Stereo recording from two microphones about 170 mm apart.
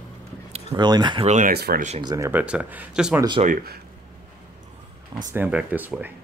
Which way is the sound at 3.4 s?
55° right (ahead or behind).